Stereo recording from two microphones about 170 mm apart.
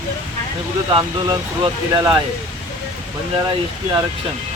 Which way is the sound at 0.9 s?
25° right (ahead or behind).